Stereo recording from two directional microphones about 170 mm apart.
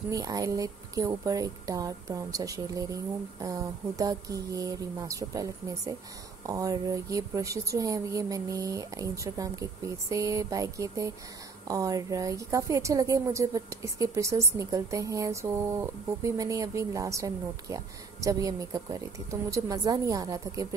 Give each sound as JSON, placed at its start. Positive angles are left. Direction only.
{"t": 0.1, "sound": "a woman's voice", "side_deg": -20}